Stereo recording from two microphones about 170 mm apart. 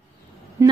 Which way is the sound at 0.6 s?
15° right (ahead or behind).